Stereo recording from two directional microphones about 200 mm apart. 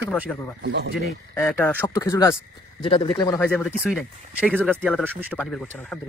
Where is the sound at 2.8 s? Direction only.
25° left (ahead or behind).